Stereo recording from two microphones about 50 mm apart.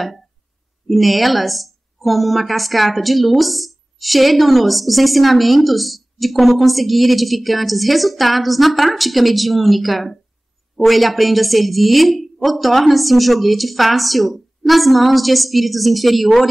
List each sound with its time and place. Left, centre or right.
0.8 s a woman's voice: centre